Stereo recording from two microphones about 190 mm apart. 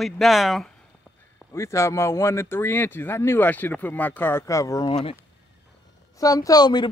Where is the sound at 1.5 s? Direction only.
15° left (ahead or behind).